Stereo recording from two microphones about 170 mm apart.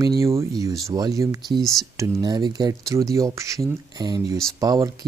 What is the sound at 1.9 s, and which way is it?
Speech, 20° right (ahead or behind).